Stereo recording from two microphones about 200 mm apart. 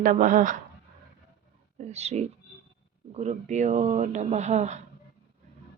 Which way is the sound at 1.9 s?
35° right (ahead or behind).